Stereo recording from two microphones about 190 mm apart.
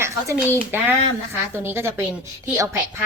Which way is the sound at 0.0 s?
10° right (ahead or behind).